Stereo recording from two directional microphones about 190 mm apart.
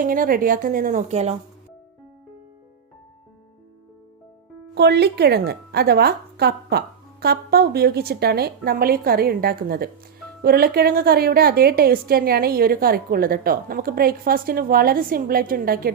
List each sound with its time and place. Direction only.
0.0 s a woman's voice: 45° right (ahead or behind)
4.7 s a woman's voice: 60° right (ahead or behind)